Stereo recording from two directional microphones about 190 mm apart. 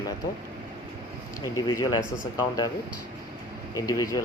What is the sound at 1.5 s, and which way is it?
Speech, 20° left (ahead or behind).